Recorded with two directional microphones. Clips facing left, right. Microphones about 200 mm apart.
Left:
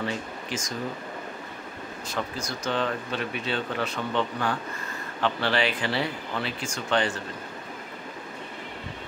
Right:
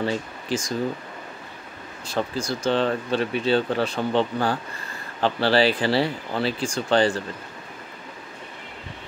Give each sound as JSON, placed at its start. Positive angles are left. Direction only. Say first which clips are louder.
{"t": 0.0, "sound": "speech", "louder": "right 5 dB", "side_deg": -35}
{"t": 2.0, "sound": "speech", "louder": "right 7 dB", "side_deg": -30}